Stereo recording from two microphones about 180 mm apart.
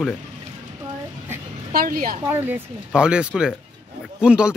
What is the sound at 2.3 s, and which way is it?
Speech, 10° right (ahead or behind).